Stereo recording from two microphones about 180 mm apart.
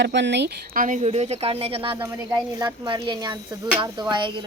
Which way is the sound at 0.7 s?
45° right (ahead or behind).